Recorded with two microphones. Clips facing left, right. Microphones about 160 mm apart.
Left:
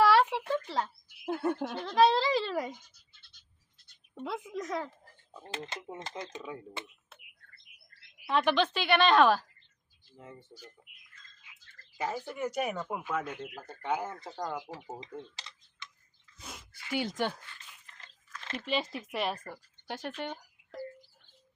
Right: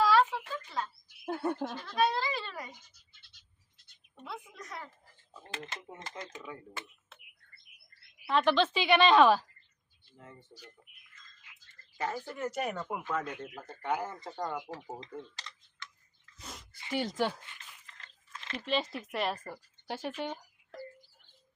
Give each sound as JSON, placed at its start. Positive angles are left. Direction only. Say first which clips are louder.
{"t": 0.0, "sound": "a sound", "louder": "left 2 dB", "side_deg": 70}
{"t": 0.4, "sound": "speech", "louder": "left 6 dB", "side_deg": 75}
{"t": 1.2, "sound": "speech", "louder": "left 2 dB", "side_deg": 0}
{"t": 1.8, "sound": "a child's voice", "louder": "left 7 dB", "side_deg": 90}
{"t": 4.1, "sound": "a child's voice", "louder": "left 9 dB", "side_deg": 90}
{"t": 5.3, "sound": "speech", "louder": "left 3 dB", "side_deg": 15}
{"t": 7.5, "sound": "bird", "louder": "left 2 dB", "side_deg": 90}
{"t": 8.3, "sound": "speech", "louder": "even", "side_deg": 0}
{"t": 10.8, "sound": "speech", "louder": "left 1 dB", "side_deg": 10}
{"t": 11.9, "sound": "speech", "louder": "left 1 dB", "side_deg": 10}
{"t": 16.4, "sound": "a sound", "louder": "even", "side_deg": 0}
{"t": 16.7, "sound": "a sound", "louder": "left 1 dB", "side_deg": -25}
{"t": 17.0, "sound": "speech", "louder": "right 1 dB", "side_deg": 0}
{"t": 18.5, "sound": "speech", "louder": "even", "side_deg": 0}